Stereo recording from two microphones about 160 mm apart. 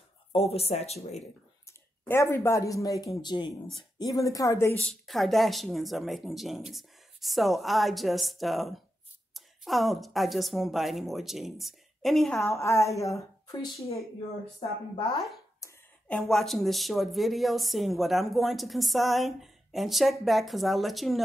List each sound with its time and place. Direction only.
0.3 s speech: 35° left (ahead or behind)
1.7 s speech: 15° left (ahead or behind)
4.7 s speech: 5° left (ahead or behind)
12.4 s speech: 15° left (ahead or behind)
15.6 s a sound: 20° left (ahead or behind)
16.1 s speech: 5° left (ahead or behind)